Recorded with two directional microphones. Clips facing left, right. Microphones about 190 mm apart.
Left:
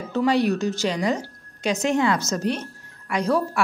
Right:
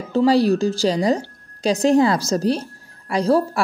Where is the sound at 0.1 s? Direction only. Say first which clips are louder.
Right 5 dB; 30° right (ahead or behind).